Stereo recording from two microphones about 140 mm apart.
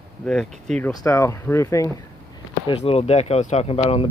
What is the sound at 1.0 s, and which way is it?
Speech, 20° left (ahead or behind).